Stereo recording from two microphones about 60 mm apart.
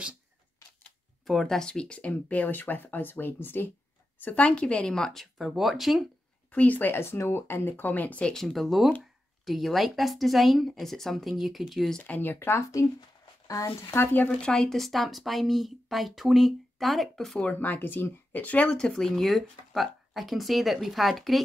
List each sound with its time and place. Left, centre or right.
1.2 s speech: centre; by 3.6 s left
4.2 s speech: left; by 5.3 s centre
5.4 s speech: centre
6.5 s speech: left
7.7 s speech: left
8.3 s speech: centre
12.1 s speech: left
13.7 s speech: left
14.4 s speech: centre
17.4 s speech: left; by 21.4 s centre